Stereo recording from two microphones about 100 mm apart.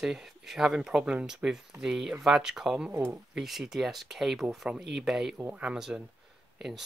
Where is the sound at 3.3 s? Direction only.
5° right (ahead or behind).